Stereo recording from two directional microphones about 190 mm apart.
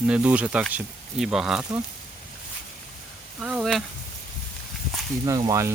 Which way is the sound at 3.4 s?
5° right (ahead or behind).